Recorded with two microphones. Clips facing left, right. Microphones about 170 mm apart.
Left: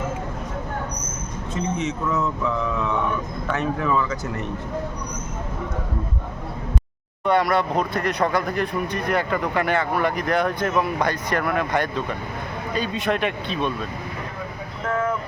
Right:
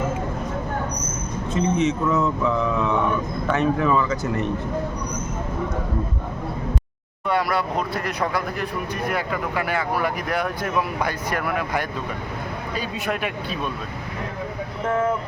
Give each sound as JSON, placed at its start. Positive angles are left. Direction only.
{"t": 1.5, "sound": "speech", "side_deg": -20}
{"t": 7.3, "sound": "speech", "side_deg": -5}
{"t": 14.8, "sound": "speech", "side_deg": -20}